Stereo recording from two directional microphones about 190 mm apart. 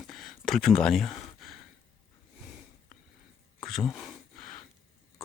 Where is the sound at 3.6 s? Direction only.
Centre (ahead or behind).